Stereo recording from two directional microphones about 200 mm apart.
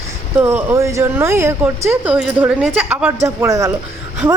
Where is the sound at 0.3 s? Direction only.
10° right (ahead or behind).